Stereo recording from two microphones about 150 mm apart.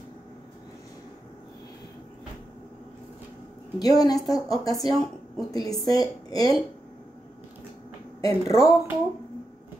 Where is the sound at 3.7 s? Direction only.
25° left (ahead or behind).